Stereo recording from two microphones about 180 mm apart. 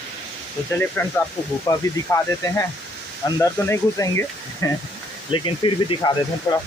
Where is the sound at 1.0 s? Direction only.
10° left (ahead or behind).